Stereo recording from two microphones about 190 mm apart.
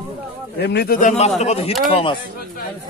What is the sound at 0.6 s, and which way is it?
A man's voice, 60° left (ahead or behind).